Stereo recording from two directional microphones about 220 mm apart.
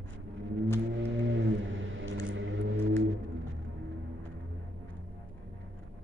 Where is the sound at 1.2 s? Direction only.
60° right (ahead or behind).